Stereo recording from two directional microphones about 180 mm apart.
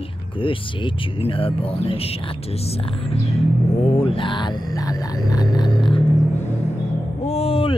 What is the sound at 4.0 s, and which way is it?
Music, 30° left (ahead or behind).